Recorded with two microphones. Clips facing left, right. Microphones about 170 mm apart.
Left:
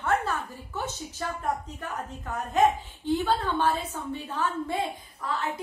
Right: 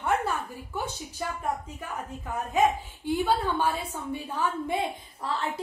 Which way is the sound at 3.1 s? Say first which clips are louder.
Even; 10° right (ahead or behind).